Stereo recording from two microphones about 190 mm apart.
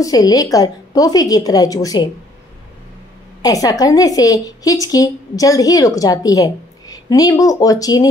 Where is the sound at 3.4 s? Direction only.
20° left (ahead or behind).